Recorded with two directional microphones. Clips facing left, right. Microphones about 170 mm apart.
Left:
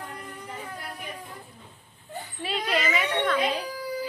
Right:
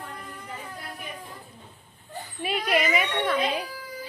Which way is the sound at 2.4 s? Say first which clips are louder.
Right 3 dB; 15° right (ahead or behind).